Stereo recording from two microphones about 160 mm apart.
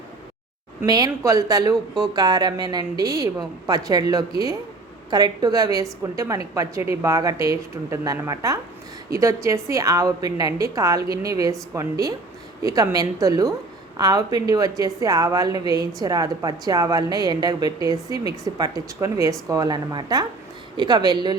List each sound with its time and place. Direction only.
0.9 s a woman's voice: 25° right (ahead or behind)